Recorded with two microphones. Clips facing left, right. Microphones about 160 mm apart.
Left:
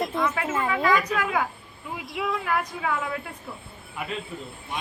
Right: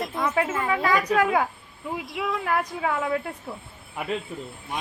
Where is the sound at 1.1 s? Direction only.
35° right (ahead or behind).